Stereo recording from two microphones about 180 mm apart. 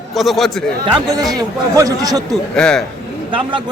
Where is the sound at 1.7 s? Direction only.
20° right (ahead or behind).